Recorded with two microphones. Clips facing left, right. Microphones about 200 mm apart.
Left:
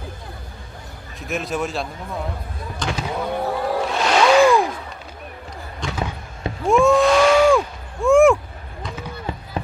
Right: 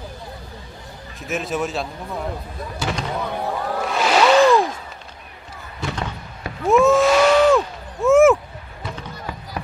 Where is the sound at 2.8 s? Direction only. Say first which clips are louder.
Right 1 dB; centre (ahead or behind).